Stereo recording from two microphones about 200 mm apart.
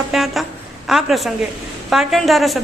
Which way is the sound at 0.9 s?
Centre (ahead or behind).